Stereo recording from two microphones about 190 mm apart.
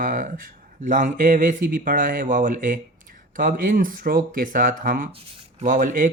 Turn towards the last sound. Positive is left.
turn(degrees=-45)  # may be behind; listen again after turning